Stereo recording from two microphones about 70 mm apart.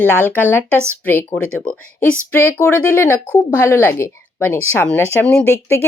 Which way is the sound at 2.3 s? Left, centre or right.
Left.